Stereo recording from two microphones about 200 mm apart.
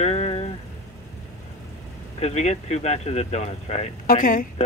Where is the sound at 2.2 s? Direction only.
35° left (ahead or behind).